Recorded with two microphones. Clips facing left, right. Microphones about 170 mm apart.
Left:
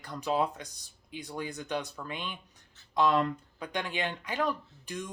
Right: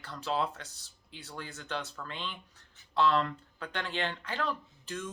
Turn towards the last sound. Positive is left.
turn(degrees=15)  # may be behind; listen again after turning